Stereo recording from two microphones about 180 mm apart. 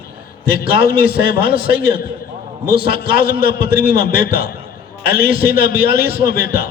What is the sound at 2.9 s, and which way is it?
Speech, 55° left (ahead or behind).